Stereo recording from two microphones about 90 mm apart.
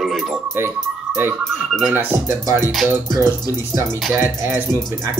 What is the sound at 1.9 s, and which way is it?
Speech, 30° right (ahead or behind).